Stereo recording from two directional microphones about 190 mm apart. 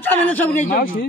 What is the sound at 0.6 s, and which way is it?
Speech, 50° left (ahead or behind).